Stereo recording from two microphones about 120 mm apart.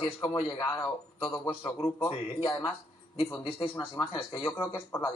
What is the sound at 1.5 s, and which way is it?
A man's voice, 30° left (ahead or behind).